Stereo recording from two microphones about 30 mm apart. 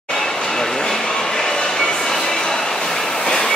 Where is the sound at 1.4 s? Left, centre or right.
Centre.